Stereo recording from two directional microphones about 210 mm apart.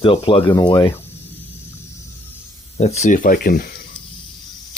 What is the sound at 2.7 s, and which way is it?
Speech, 30° left (ahead or behind).